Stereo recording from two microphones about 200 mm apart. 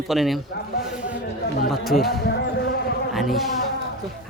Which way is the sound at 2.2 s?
60° left (ahead or behind).